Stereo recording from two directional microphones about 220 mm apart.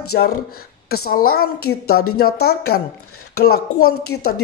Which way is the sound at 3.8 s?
75° left (ahead or behind).